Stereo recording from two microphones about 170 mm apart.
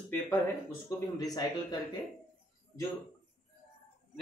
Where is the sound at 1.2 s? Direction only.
25° left (ahead or behind).